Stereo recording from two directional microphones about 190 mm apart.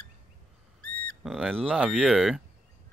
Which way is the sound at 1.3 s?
Centre (ahead or behind).